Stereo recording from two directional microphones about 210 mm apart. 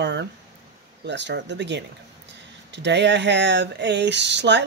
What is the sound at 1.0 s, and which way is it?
Speech, 55° right (ahead or behind).